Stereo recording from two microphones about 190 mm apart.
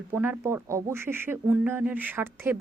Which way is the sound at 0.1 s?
10° right (ahead or behind).